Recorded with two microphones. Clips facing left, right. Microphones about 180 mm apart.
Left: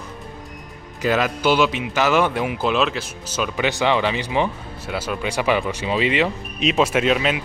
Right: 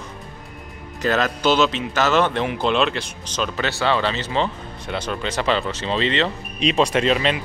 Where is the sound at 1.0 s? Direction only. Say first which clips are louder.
Even; 10° left (ahead or behind).